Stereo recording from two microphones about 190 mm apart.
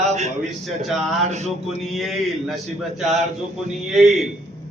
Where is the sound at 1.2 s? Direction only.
35° right (ahead or behind).